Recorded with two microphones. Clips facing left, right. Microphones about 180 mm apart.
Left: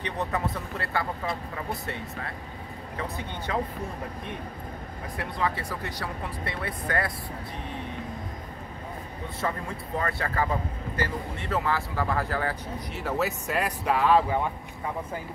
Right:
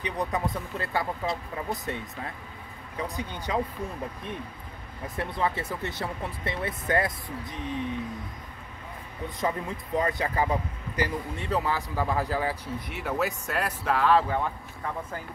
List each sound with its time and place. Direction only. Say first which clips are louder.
0.0 s a man's voice: even; 15° right (ahead or behind)
3.0 s a man's voice: right 2 dB; 15° right (ahead or behind)
5.1 s speech: right 1 dB; 25° right (ahead or behind)
9.4 s a man's voice: right 2 dB; 15° right (ahead or behind)
13.0 s speech: left 1 dB; 5° left (ahead or behind)